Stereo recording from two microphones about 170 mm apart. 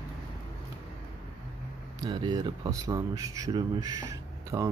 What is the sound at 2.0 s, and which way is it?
Speech, 25° right (ahead or behind).